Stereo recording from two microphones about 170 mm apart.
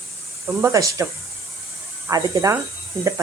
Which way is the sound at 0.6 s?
20° right (ahead or behind).